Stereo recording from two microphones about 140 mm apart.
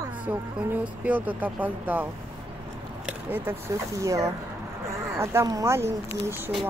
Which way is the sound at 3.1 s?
15° right (ahead or behind).